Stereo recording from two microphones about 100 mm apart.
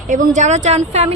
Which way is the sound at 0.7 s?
90° right.